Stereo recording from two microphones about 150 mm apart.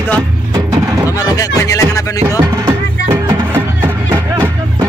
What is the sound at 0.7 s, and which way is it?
Music, 20° right (ahead or behind).